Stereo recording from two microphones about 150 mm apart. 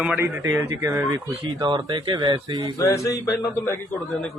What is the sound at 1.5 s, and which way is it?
Speech, 30° right (ahead or behind).